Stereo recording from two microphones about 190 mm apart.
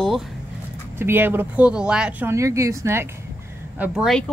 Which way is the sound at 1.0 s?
10° right (ahead or behind).